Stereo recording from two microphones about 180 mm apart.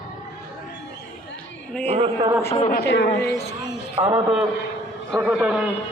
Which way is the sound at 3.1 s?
15° left (ahead or behind).